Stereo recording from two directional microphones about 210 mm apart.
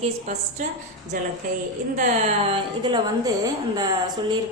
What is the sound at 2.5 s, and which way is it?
A woman's voice, 20° right (ahead or behind).